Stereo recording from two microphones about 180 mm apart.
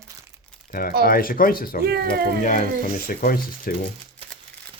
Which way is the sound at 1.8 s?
60° right (ahead or behind).